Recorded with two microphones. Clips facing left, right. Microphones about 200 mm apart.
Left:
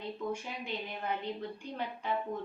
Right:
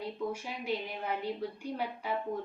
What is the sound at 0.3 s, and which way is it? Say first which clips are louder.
A woman's voice: right 2 dB; 5° right (ahead or behind).